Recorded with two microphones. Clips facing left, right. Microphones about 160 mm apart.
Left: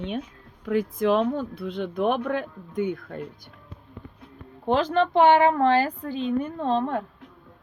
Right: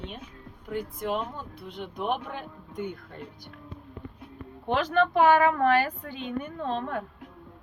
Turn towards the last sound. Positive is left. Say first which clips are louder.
# left 6 dB
turn(degrees=35)  # may be behind; listen again after turning